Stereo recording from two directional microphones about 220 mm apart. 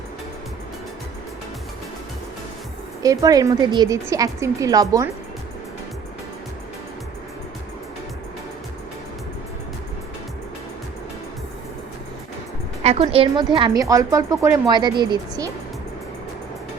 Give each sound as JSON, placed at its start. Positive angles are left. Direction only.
{"t": 3.0, "sound": "a woman's voice", "side_deg": -15}
{"t": 12.8, "sound": "speech", "side_deg": -30}